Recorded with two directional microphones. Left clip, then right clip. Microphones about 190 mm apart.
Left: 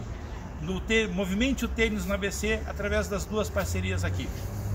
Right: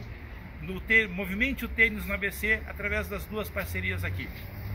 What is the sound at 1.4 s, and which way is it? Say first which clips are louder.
Speech: right 4 dB; 15° left (ahead or behind).